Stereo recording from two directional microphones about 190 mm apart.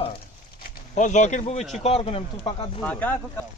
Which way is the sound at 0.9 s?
40° left (ahead or behind).